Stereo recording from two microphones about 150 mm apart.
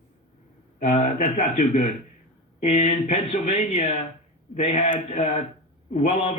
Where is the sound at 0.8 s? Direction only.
50° left (ahead or behind).